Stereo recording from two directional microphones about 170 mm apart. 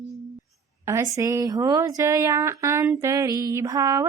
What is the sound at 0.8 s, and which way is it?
Speech, 15° right (ahead or behind).